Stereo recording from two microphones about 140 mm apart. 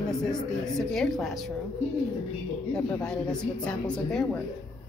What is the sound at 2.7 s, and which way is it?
A woman's voice, 5° left (ahead or behind).